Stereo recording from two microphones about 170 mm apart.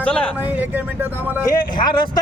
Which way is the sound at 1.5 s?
25° left (ahead or behind).